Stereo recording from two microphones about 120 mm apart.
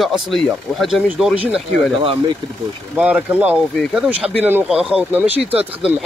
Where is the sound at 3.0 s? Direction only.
10° right (ahead or behind).